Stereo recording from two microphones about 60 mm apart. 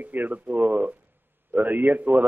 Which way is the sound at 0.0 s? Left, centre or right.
Right.